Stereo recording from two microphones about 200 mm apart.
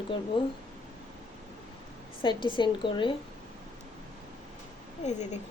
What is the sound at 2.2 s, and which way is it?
Speech, 25° left (ahead or behind).